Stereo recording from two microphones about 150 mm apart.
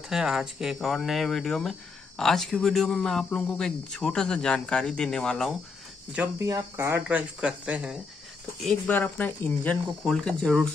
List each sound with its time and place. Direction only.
0.1 s speech: 5° right (ahead or behind)
6.4 s speech: 20° right (ahead or behind)
7.1 s speech: 10° right (ahead or behind)
8.8 s speech: 10° left (ahead or behind)